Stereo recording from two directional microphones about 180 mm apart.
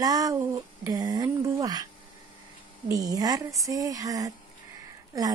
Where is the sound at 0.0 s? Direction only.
20° right (ahead or behind).